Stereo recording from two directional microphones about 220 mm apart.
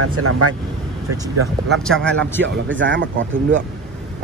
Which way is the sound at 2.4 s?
55° right (ahead or behind).